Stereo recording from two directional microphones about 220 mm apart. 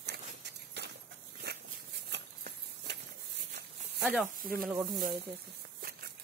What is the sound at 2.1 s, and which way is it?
Horse, 50° right (ahead or behind).